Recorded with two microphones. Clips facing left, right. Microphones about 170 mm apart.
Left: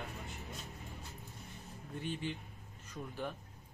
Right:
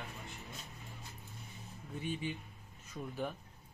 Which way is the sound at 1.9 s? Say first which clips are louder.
Right 1 dB; 10° right (ahead or behind).